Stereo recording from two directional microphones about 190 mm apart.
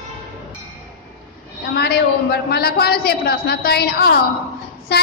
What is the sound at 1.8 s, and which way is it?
A woman's voice, 55° left (ahead or behind).